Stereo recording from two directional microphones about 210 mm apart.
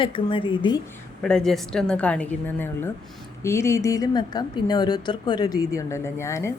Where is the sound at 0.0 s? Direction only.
25° left (ahead or behind).